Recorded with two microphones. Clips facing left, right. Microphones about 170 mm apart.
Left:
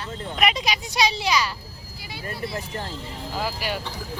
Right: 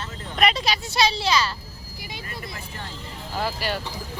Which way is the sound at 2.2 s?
35° left (ahead or behind).